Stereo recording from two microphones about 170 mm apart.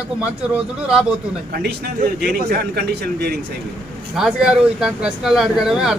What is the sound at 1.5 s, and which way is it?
A man's voice, 65° right (ahead or behind).